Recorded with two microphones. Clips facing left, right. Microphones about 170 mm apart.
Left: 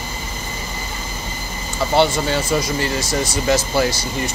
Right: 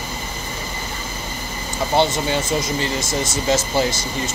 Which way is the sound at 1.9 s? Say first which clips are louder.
Left 2 dB; 20° right (ahead or behind).